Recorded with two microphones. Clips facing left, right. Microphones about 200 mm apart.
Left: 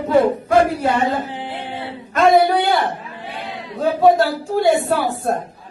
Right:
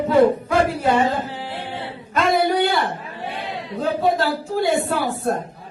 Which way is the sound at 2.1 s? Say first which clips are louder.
Left 5 dB; 50° left (ahead or behind).